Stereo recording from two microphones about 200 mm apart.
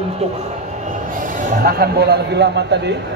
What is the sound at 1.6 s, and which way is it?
A man's voice, 50° right (ahead or behind).